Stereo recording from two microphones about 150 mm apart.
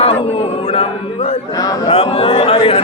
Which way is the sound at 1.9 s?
40° left (ahead or behind).